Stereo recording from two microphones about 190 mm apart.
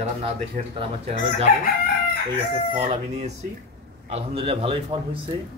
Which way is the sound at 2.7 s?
30° right (ahead or behind).